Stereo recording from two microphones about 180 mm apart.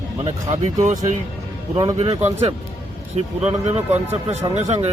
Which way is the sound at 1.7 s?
30° right (ahead or behind).